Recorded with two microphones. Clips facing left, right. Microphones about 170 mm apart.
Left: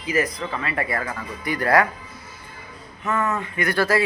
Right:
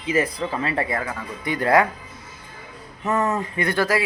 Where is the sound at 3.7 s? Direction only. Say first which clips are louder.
Left 2 dB; 15° right (ahead or behind).